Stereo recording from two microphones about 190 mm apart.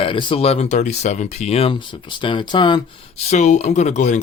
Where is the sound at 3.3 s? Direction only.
40° left (ahead or behind).